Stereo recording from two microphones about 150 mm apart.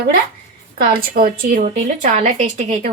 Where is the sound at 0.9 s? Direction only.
80° right.